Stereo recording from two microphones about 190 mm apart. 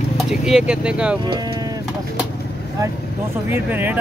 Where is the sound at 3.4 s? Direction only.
10° right (ahead or behind).